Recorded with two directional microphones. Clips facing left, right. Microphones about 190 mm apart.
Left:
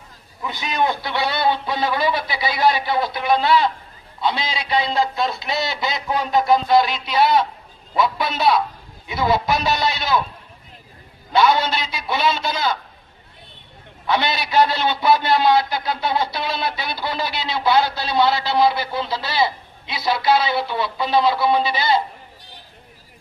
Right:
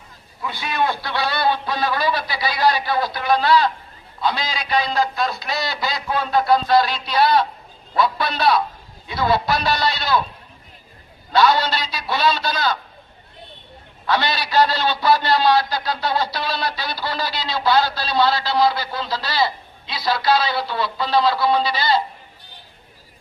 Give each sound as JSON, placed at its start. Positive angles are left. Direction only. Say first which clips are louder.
{"t": 0.4, "sound": "a man's voice", "louder": "left 1 dB", "side_deg": 15}
{"t": 9.0, "sound": "a man's voice", "louder": "even", "side_deg": 20}
{"t": 11.3, "sound": "a man's voice", "louder": "even", "side_deg": 20}
{"t": 14.1, "sound": "a man's voice", "louder": "even", "side_deg": 20}